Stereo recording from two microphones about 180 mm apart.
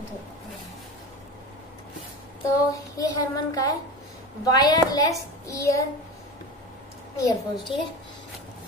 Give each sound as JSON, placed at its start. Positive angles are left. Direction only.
{"t": 2.7, "sound": "a child's voice", "side_deg": 20}
{"t": 7.2, "sound": "a child's voice", "side_deg": 25}